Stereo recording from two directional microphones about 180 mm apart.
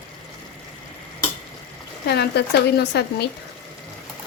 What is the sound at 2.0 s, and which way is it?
Speech, 65° left (ahead or behind).